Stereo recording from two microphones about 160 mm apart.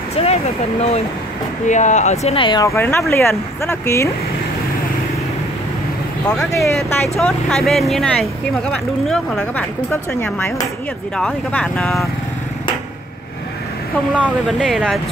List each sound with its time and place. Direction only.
0.2 s speech: 40° left (ahead or behind)
2.3 s speech: 30° left (ahead or behind)
2.6 s speech: 15° left (ahead or behind)
6.2 s speech: 20° left (ahead or behind)
7.2 s speech: 5° left (ahead or behind)
14.2 s speech: centre (ahead or behind)